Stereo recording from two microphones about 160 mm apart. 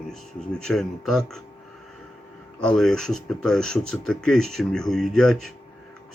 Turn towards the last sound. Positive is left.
turn(degrees=0)  # may be behind; listen again after turning